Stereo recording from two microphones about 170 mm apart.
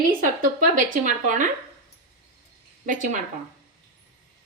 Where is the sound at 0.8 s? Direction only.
50° right (ahead or behind).